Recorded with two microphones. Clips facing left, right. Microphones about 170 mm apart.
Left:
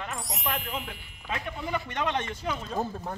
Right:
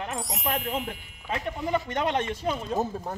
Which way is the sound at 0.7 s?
45° right (ahead or behind).